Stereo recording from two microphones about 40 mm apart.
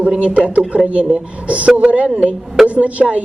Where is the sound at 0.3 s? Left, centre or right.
Right.